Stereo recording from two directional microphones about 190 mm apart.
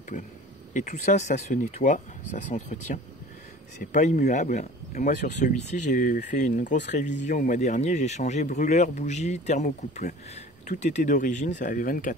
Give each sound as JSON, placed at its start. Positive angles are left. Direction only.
{"t": 0.7, "sound": "speech", "side_deg": 40}